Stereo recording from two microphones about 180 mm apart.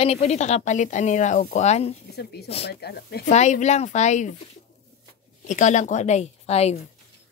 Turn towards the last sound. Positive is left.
turn(degrees=35)  # may be behind; listen again after turning